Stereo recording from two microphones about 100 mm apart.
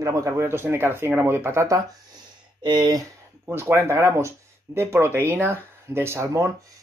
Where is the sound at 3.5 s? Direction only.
25° right (ahead or behind).